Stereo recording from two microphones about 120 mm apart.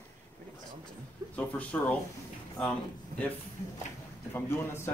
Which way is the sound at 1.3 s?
15° left (ahead or behind).